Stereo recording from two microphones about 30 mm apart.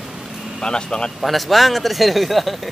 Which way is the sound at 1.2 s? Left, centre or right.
Centre.